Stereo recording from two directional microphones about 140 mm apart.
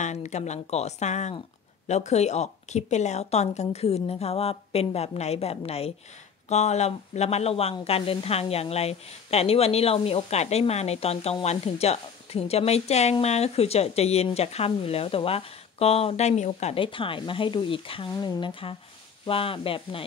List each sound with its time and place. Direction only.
0.0 s speech: 55° left (ahead or behind)
16.8 s speech: 40° left (ahead or behind)